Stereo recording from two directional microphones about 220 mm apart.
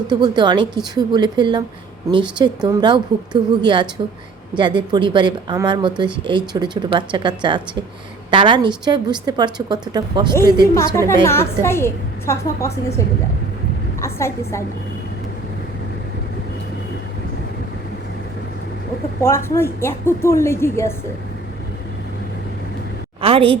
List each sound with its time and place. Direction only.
0.1 s a woman's voice: 20° right (ahead or behind)
10.8 s a woman's voice: 10° left (ahead or behind)
14.0 s a woman's voice: 10° left (ahead or behind)
19.2 s a woman's voice: 10° left (ahead or behind)
23.2 s a woman's voice: 25° right (ahead or behind)